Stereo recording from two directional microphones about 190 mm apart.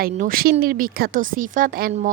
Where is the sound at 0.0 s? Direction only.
50° right (ahead or behind).